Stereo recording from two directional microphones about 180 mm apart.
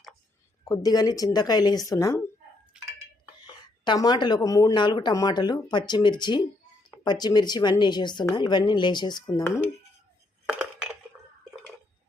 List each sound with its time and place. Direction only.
0.7 s speech: 20° left (ahead or behind)
2.8 s dishes: 5° right (ahead or behind)
3.4 s speech: 25° left (ahead or behind)
9.4 s speech: 10° left (ahead or behind)
10.6 s dishes: 10° right (ahead or behind)